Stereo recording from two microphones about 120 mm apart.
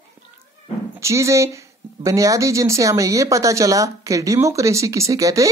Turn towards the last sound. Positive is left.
turn(degrees=-25)  # may be behind; listen again after turning